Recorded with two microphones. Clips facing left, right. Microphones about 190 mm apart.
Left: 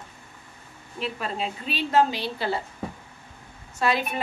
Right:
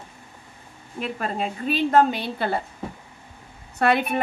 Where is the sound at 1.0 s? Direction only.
50° right (ahead or behind).